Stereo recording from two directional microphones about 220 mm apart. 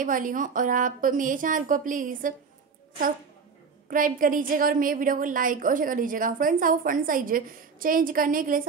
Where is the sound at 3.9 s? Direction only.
40° right (ahead or behind).